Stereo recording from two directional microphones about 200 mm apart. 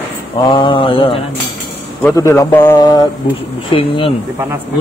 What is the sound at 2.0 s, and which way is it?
Speech, 10° left (ahead or behind).